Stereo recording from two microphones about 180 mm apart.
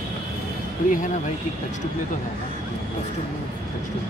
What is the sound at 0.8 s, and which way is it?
Speech, 45° left (ahead or behind).